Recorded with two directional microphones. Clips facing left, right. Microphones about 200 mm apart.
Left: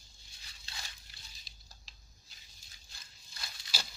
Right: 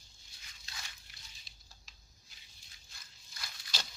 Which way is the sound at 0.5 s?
35° left (ahead or behind).